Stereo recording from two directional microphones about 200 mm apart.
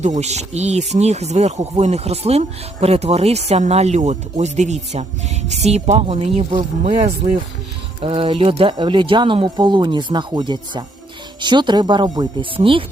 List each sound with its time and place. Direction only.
0.0 s speech: 35° right (ahead or behind)